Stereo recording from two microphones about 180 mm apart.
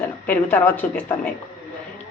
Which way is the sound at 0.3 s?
10° left (ahead or behind).